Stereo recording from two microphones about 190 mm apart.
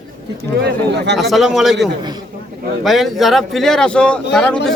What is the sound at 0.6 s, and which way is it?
Speech, 65° right (ahead or behind).